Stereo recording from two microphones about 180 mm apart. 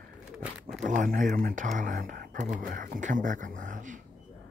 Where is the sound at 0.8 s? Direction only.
45° right (ahead or behind).